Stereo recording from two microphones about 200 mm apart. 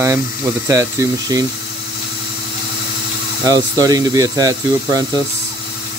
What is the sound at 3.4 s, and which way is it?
Speech, 20° right (ahead or behind).